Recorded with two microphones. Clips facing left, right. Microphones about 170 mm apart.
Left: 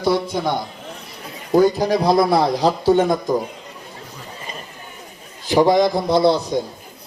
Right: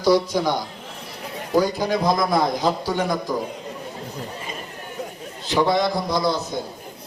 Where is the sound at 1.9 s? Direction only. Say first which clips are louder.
Left 4 dB; 30° left (ahead or behind).